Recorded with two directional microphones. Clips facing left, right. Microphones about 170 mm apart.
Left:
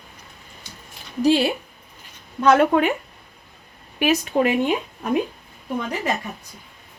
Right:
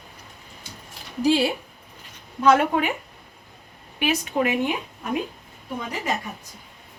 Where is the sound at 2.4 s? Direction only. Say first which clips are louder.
Left 3 dB; 55° left (ahead or behind).